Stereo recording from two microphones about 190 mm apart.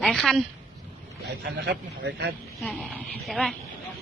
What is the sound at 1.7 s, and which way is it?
Speech, 65° right (ahead or behind).